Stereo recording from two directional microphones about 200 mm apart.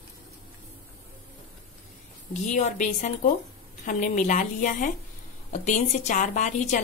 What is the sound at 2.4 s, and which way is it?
A woman's voice, 35° left (ahead or behind).